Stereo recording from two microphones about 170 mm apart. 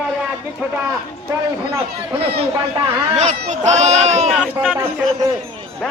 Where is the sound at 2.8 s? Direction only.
45° right (ahead or behind).